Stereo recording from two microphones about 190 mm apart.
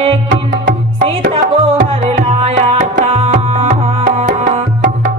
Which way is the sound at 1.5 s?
30° right (ahead or behind).